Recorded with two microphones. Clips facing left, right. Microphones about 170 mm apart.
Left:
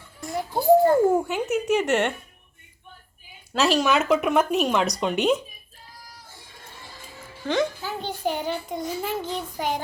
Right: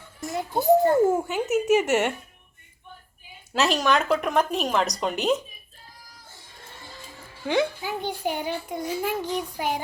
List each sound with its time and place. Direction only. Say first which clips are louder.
0.3 s a child's voice: even; 20° right (ahead or behind)
1.1 s speech: left 1 dB; centre (ahead or behind)
3.5 s speech: left 1 dB; centre (ahead or behind)
7.4 s a child's voice: even; 10° right (ahead or behind)